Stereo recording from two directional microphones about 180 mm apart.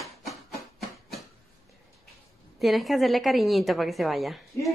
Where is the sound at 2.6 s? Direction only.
Centre (ahead or behind).